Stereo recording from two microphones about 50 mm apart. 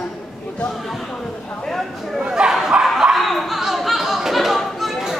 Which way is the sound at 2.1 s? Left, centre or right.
Centre.